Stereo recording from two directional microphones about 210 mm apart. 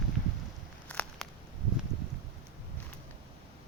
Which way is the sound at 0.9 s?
5° left (ahead or behind).